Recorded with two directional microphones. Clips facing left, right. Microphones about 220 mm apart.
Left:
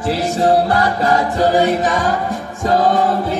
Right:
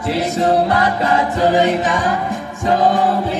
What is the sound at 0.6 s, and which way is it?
Music, 35° left (ahead or behind).